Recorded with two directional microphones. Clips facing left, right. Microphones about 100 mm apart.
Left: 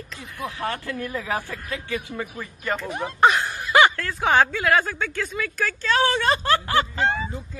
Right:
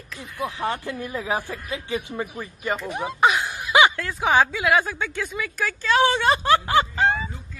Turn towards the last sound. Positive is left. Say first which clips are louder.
# right 2 dB
turn(degrees=-15)  # may be behind; listen again after turning